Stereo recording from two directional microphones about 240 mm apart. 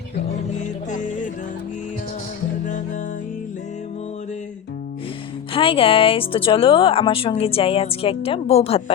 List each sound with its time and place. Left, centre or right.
0.6 s music: left
5.5 s a woman's voice: left